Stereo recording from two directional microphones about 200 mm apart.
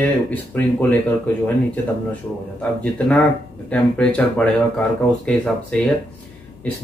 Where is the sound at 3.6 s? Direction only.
5° left (ahead or behind).